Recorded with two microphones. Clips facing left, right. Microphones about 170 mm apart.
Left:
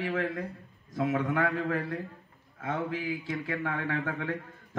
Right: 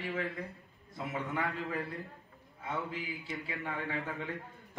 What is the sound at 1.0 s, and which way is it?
A man's voice, 65° left (ahead or behind).